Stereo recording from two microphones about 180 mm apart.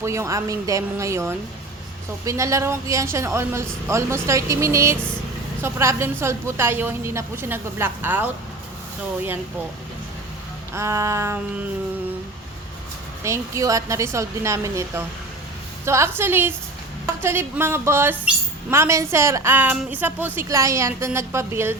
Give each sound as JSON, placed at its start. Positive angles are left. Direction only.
{"t": 0.0, "sound": "a woman's voice", "side_deg": -15}
{"t": 10.8, "sound": "a woman's voice", "side_deg": -15}
{"t": 13.2, "sound": "a woman's voice", "side_deg": -15}